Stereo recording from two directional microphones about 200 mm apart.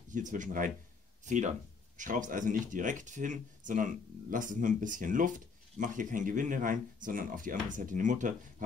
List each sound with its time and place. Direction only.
0.1 s speech: 40° right (ahead or behind)